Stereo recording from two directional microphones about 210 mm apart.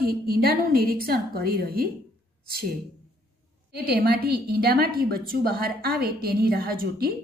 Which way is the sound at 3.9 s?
45° right (ahead or behind).